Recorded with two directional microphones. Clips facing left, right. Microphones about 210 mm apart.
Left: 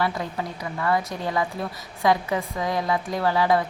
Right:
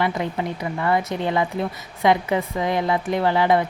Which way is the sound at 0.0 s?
20° right (ahead or behind).